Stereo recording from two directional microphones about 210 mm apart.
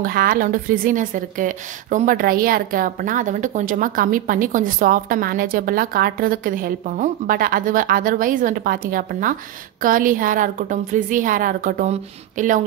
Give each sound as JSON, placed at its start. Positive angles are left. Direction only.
{"t": 0.0, "sound": "a woman's voice", "side_deg": -45}